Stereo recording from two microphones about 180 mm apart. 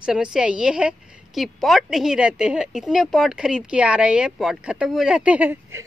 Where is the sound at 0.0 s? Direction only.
5° right (ahead or behind).